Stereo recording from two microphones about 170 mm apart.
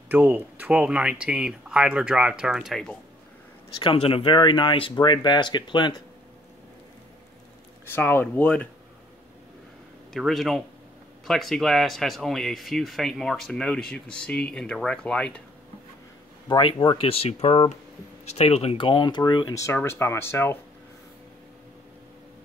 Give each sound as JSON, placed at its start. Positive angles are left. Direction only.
{"t": 0.1, "sound": "speech", "side_deg": -10}
{"t": 3.8, "sound": "speech", "side_deg": 35}
{"t": 7.8, "sound": "speech", "side_deg": 10}
{"t": 10.1, "sound": "speech", "side_deg": 0}
{"t": 16.4, "sound": "speech", "side_deg": 30}